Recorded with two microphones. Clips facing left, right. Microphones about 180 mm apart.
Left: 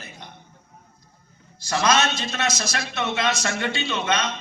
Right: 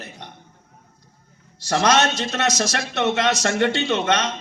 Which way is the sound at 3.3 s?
40° right (ahead or behind).